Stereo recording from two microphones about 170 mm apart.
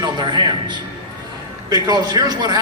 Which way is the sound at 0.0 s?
25° right (ahead or behind).